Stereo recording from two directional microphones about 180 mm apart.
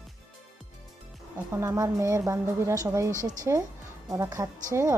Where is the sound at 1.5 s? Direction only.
15° right (ahead or behind).